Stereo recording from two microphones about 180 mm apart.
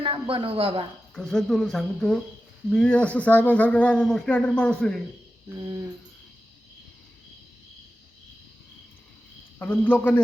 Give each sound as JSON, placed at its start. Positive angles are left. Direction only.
{"t": 0.0, "sound": "speech", "side_deg": -30}
{"t": 1.1, "sound": "speech", "side_deg": 5}
{"t": 9.6, "sound": "speech", "side_deg": 10}